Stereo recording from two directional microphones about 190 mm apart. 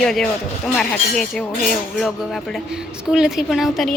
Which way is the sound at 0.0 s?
Centre (ahead or behind).